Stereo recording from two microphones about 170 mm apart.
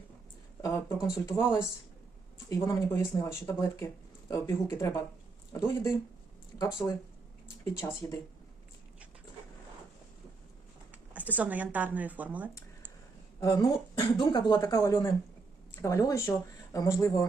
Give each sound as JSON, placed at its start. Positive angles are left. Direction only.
{"t": 0.6, "sound": "speech", "side_deg": 20}
{"t": 7.8, "sound": "speech", "side_deg": 15}
{"t": 11.1, "sound": "speech", "side_deg": -10}
{"t": 13.4, "sound": "speech", "side_deg": 20}